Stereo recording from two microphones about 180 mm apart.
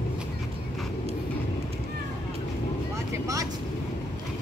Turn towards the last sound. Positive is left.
turn(degrees=-20)  # may be behind; listen again after turning